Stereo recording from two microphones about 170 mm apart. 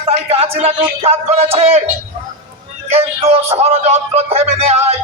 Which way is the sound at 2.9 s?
35° right (ahead or behind).